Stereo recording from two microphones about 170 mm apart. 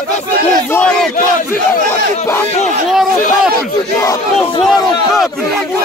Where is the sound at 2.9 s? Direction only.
5° right (ahead or behind).